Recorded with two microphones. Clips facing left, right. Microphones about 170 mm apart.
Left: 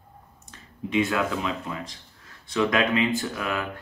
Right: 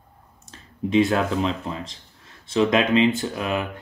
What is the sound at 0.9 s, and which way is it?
Speech, 35° right (ahead or behind).